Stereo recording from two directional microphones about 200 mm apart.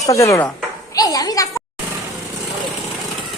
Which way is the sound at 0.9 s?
20° left (ahead or behind).